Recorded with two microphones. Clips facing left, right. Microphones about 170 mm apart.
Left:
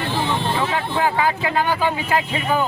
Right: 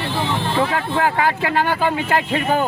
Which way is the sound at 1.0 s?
60° right (ahead or behind).